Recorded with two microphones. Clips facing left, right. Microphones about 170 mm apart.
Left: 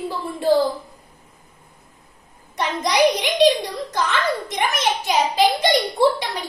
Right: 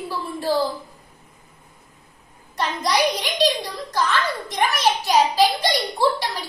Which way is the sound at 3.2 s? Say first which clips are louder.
Left 5 dB; 20° left (ahead or behind).